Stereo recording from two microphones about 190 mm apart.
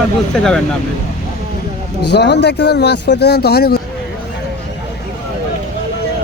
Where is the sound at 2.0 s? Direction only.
65° left (ahead or behind).